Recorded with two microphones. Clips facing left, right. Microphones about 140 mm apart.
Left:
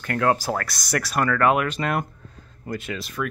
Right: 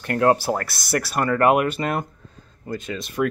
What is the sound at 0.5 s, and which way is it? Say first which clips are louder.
Speech: right 2 dB; 5° right (ahead or behind).